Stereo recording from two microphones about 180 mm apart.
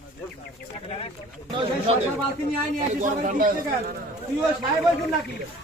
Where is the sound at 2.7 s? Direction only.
45° right (ahead or behind).